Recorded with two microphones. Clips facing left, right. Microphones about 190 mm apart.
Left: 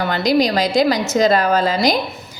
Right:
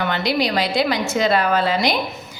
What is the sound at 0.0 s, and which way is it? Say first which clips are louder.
A woman's voice: left 4 dB; 40° left (ahead or behind).